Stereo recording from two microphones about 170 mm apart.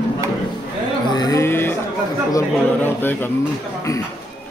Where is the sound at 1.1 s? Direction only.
20° left (ahead or behind).